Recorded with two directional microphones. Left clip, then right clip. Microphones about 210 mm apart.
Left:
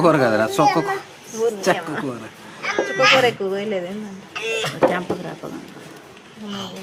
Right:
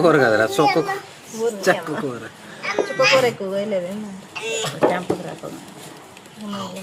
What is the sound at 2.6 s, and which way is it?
Speech, 20° left (ahead or behind).